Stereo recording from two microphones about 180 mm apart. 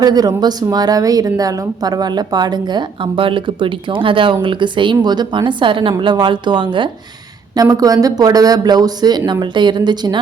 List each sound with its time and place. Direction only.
0.0 s a woman's voice: 20° right (ahead or behind)